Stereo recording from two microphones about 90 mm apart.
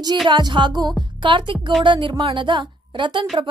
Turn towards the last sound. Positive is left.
turn(degrees=-65)  # may be behind; listen again after turning